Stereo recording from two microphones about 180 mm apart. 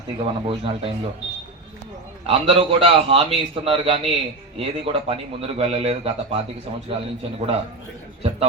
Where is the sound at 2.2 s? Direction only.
30° right (ahead or behind).